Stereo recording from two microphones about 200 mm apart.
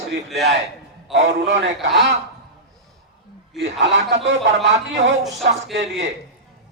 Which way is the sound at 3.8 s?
65° right (ahead or behind).